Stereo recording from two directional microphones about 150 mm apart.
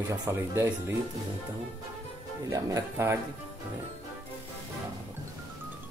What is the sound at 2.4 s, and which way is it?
Speech, 20° right (ahead or behind).